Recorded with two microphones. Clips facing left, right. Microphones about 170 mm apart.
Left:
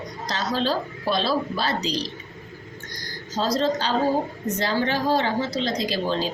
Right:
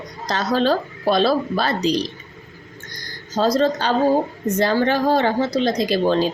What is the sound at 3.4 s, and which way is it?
Speech, 50° right (ahead or behind).